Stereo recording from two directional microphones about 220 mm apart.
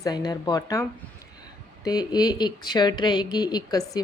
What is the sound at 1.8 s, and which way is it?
Speech, 20° left (ahead or behind).